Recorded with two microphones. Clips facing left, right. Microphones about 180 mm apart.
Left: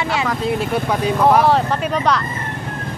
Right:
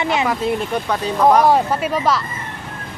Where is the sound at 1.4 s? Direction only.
10° right (ahead or behind).